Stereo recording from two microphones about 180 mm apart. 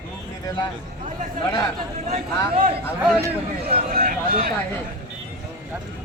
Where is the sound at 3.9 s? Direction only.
55° right (ahead or behind).